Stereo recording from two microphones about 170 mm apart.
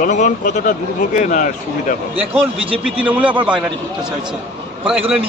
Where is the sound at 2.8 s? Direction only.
10° right (ahead or behind).